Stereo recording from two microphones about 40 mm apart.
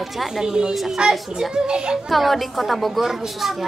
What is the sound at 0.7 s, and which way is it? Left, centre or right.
Speech, centre.